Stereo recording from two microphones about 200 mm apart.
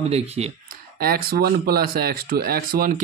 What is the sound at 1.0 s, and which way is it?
Speech, 50° right (ahead or behind).